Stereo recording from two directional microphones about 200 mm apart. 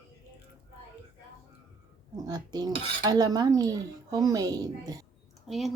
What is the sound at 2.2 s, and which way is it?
Dishes, 20° right (ahead or behind).